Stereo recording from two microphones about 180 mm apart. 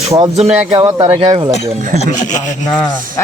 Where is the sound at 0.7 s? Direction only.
25° right (ahead or behind).